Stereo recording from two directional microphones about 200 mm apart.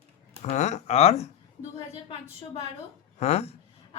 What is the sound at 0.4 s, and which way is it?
Speech, 35° left (ahead or behind).